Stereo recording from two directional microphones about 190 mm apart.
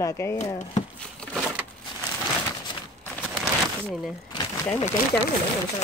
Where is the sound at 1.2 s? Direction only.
5° left (ahead or behind).